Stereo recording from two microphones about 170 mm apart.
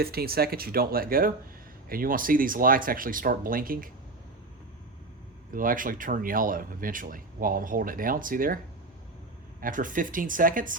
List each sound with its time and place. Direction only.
0.0 s speech: 65° right (ahead or behind)
5.5 s speech: 55° right (ahead or behind)
9.6 s speech: 50° right (ahead or behind)